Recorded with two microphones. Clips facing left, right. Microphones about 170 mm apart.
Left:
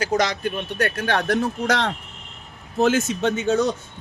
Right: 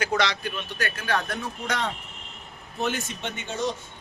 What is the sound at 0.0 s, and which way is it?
Speech, 40° left (ahead or behind).